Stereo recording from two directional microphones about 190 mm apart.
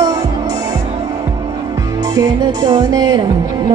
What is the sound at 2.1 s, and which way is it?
Music, 20° right (ahead or behind).